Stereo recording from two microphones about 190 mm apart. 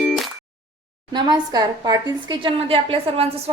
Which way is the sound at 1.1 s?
20° right (ahead or behind).